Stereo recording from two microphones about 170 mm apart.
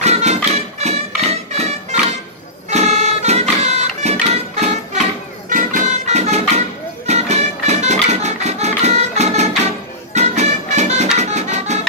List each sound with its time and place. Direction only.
0.0 s music: 40° right (ahead or behind)
5.5 s music: 50° right (ahead or behind)